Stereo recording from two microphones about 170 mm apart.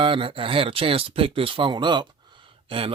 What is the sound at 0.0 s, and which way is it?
Speech, 30° right (ahead or behind).